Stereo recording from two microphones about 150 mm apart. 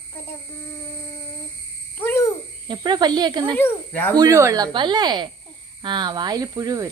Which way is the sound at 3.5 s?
10° left (ahead or behind).